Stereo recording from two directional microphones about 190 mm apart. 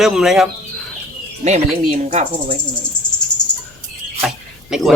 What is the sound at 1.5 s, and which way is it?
Speech, 35° right (ahead or behind).